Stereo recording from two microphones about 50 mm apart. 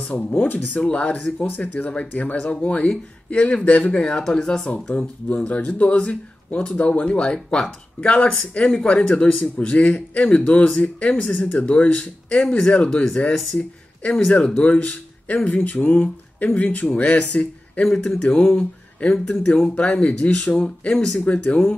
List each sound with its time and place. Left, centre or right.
0.1 s a man's voice: left
4.0 s a man's voice: centre
13.3 s speech: centre
14.4 s a man's voice: left
19.7 s a man's voice: left